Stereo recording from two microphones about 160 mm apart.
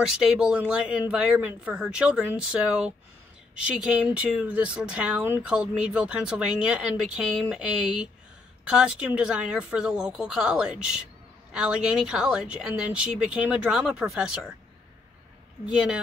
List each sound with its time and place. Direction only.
0.2 s speech: 5° right (ahead or behind)
15.6 s speech: 5° right (ahead or behind)